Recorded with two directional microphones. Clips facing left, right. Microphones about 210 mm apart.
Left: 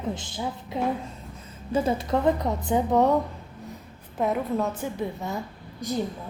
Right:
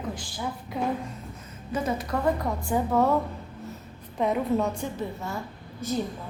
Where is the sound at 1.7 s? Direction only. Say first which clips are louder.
Left 4 dB; 30° left (ahead or behind).